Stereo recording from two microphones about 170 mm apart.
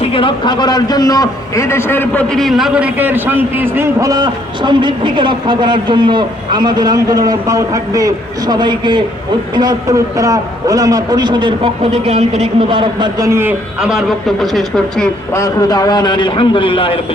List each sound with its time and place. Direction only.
0.0 s a man's voice: 30° left (ahead or behind); by 15.1 s centre (ahead or behind)
15.3 s a man's voice: 20° left (ahead or behind)